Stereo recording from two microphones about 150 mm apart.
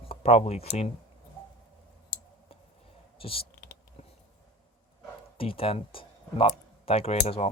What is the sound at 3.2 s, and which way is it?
Speech, 40° left (ahead or behind).